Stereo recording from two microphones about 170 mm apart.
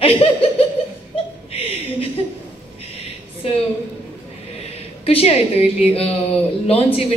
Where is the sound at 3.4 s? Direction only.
35° left (ahead or behind).